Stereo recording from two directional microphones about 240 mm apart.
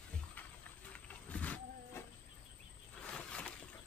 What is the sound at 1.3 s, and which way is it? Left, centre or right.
Wild animals, centre.